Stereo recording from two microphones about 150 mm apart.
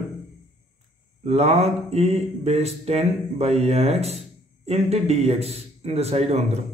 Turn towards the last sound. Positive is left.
turn(degrees=-45)  # may be behind; listen again after turning